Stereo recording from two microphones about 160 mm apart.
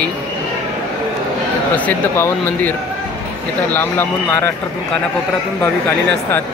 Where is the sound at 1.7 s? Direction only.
10° left (ahead or behind).